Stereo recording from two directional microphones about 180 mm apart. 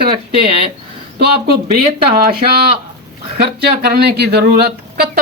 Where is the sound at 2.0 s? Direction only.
60° right (ahead or behind).